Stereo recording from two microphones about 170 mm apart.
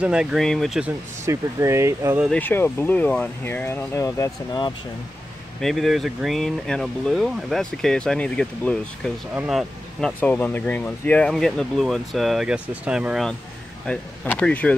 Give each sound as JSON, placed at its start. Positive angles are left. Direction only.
{"t": 0.0, "sound": "speech", "side_deg": -5}
{"t": 1.2, "sound": "speech", "side_deg": -15}
{"t": 2.3, "sound": "speech", "side_deg": 10}
{"t": 5.6, "sound": "speech", "side_deg": 0}